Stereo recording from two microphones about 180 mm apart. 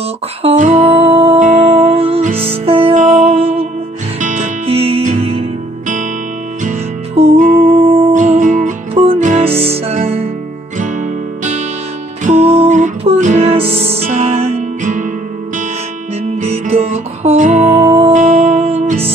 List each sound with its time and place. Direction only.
0.4 s music: 35° right (ahead or behind)
6.6 s music: 40° right (ahead or behind)
7.8 s music: 30° right (ahead or behind)
8.1 s music: 45° right (ahead or behind)
10.8 s music: 45° right (ahead or behind)
16.4 s music: 35° right (ahead or behind)
18.1 s music: 40° right (ahead or behind)